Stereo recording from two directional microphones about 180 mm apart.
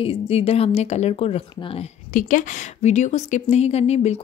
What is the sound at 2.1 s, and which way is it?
A woman's voice, 45° left (ahead or behind).